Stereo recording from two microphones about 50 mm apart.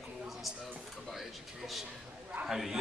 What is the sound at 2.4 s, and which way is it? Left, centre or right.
Speech, centre.